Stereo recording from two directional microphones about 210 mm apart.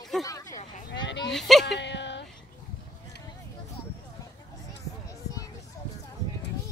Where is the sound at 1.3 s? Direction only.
Centre (ahead or behind).